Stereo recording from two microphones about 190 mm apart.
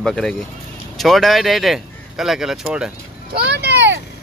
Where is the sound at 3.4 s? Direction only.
65° right (ahead or behind).